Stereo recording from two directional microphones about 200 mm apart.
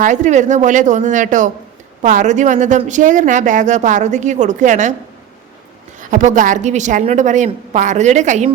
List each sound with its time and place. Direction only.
0.0 s speech: 40° right (ahead or behind)
6.0 s speech: 40° right (ahead or behind)